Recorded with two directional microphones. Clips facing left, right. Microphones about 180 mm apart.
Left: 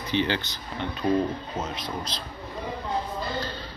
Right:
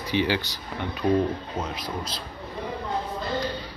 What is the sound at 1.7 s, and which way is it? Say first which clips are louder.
Speech: right 1 dB; 10° right (ahead or behind).